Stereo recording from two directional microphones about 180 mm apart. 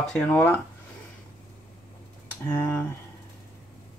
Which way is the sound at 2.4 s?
10° left (ahead or behind).